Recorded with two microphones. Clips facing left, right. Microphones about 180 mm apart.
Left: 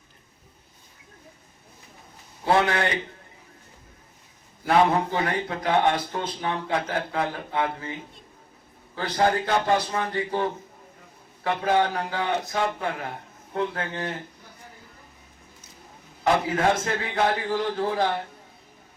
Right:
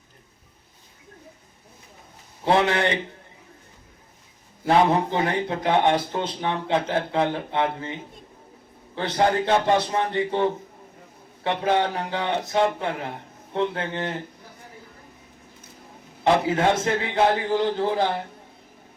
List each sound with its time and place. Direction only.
2.4 s a man's voice: 25° right (ahead or behind)
5.1 s a man's voice: 20° right (ahead or behind)
9.0 s a man's voice: 25° right (ahead or behind)
16.2 s a man's voice: 25° right (ahead or behind)